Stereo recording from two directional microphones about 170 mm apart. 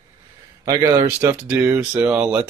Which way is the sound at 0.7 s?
25° right (ahead or behind).